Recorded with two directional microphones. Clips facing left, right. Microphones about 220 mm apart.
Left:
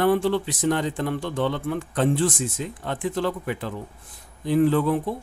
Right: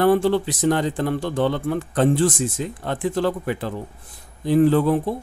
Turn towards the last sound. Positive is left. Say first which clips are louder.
# right 3 dB
turn(degrees=-35)  # may be behind; listen again after turning